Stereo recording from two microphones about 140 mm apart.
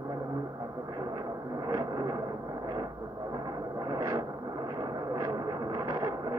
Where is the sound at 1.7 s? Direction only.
25° right (ahead or behind).